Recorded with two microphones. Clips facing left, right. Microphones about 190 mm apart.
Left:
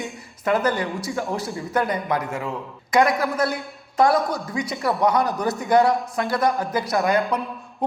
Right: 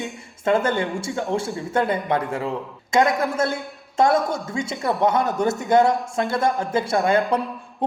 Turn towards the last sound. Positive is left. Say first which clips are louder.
# right 1 dB
turn(degrees=-25)  # may be behind; listen again after turning